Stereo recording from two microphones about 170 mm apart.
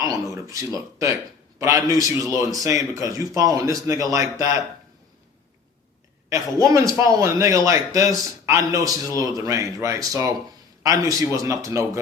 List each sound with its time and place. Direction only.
0.0 s speech: 20° right (ahead or behind)
6.3 s speech: 20° right (ahead or behind)